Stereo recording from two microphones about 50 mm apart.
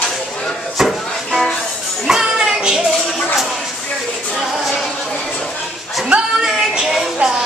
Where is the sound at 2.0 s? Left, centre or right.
Centre.